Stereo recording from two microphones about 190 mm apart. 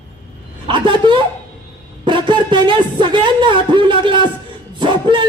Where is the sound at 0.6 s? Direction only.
25° right (ahead or behind).